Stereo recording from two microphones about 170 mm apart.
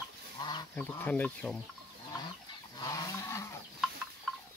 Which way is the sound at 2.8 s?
20° left (ahead or behind).